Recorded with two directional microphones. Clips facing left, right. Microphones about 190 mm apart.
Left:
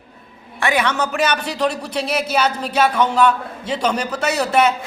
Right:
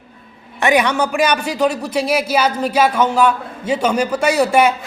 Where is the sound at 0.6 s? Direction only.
15° right (ahead or behind).